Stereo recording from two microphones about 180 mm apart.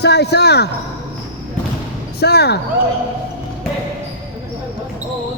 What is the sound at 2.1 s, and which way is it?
Speech, 65° left (ahead or behind).